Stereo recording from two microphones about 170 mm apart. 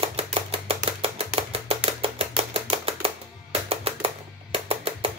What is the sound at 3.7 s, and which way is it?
Music, 35° right (ahead or behind).